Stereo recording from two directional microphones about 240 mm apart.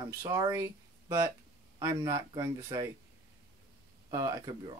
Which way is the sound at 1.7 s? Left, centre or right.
Centre.